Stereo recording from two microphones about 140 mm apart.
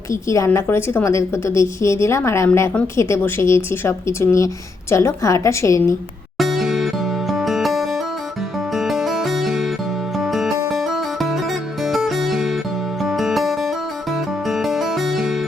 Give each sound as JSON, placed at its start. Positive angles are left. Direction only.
{"t": 0.1, "sound": "speech", "side_deg": 20}
{"t": 6.3, "sound": "music", "side_deg": 0}